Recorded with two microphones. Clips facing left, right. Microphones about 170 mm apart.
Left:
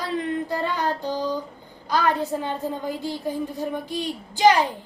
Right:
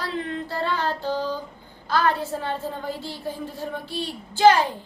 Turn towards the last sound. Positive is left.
turn(degrees=15)  # may be behind; listen again after turning